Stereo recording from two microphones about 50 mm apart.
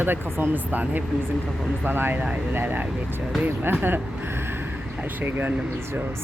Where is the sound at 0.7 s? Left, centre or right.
Right.